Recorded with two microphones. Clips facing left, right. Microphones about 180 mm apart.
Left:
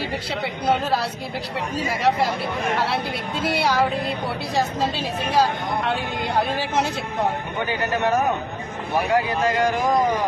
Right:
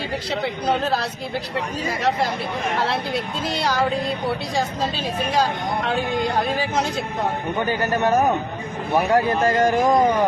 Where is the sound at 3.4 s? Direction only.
10° left (ahead or behind).